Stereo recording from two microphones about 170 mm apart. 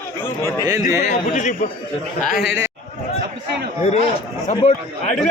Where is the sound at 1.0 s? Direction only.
50° left (ahead or behind).